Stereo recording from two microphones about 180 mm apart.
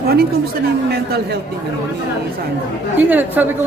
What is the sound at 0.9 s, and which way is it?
Speech, 60° right (ahead or behind).